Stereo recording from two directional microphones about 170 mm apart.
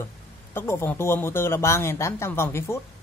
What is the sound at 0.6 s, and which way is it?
Speech, 15° left (ahead or behind).